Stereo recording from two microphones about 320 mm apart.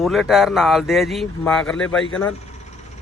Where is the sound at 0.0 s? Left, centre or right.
Centre.